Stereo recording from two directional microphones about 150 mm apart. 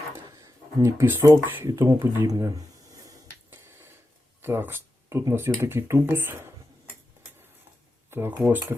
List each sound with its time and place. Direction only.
0.4 s speech: 20° right (ahead or behind)
2.9 s finger snapping: 20° right (ahead or behind)
4.4 s speech: 15° right (ahead or behind)
8.1 s speech: 15° right (ahead or behind)